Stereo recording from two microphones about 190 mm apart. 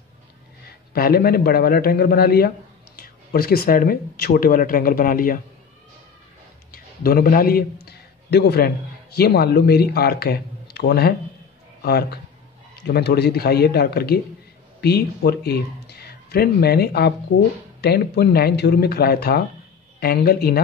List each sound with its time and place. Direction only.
0.7 s speech: 55° left (ahead or behind)
6.7 s a man's voice: 50° left (ahead or behind)